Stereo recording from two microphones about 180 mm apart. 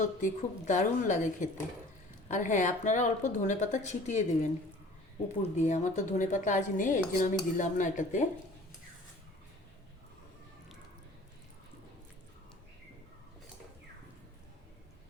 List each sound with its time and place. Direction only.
0.0 s speech: 45° left (ahead or behind)
5.4 s speech: 40° left (ahead or behind)